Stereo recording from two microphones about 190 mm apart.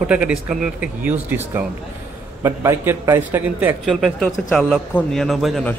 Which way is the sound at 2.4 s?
15° right (ahead or behind).